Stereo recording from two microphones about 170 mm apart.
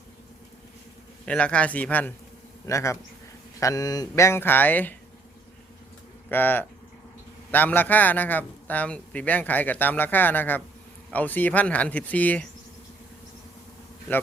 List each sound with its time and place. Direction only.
1.2 s a man's voice: 5° left (ahead or behind)
6.2 s a man's voice: 10° left (ahead or behind)